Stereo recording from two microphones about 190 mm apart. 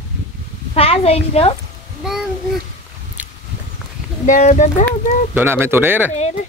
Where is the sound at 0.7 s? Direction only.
30° left (ahead or behind).